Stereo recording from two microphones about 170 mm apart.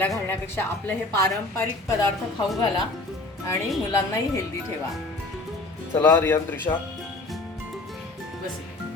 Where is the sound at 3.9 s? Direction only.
15° left (ahead or behind).